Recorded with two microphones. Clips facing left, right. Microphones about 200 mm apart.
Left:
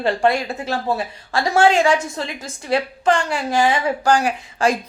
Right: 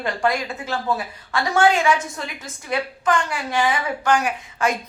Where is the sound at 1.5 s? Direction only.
30° left (ahead or behind).